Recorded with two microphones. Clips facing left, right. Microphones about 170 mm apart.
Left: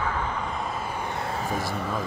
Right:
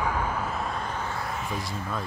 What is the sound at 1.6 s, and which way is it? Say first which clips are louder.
Speech: left 5 dB; 65° left (ahead or behind).